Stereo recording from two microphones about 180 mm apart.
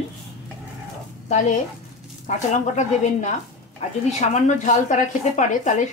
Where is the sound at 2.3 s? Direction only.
40° left (ahead or behind).